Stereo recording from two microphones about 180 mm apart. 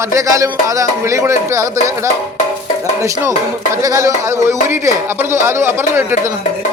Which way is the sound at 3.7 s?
15° right (ahead or behind).